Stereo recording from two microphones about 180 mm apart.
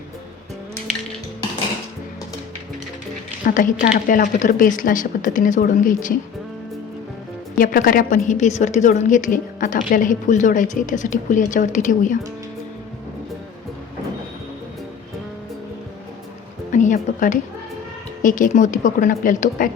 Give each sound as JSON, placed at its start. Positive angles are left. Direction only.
{"t": 3.4, "sound": "a woman's voice", "side_deg": 45}
{"t": 7.6, "sound": "a woman's voice", "side_deg": 50}
{"t": 16.7, "sound": "a sound", "side_deg": 45}
{"t": 18.2, "sound": "a woman's voice", "side_deg": 45}